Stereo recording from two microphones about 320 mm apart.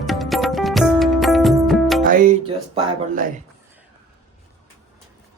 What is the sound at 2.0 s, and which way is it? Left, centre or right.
Music, right.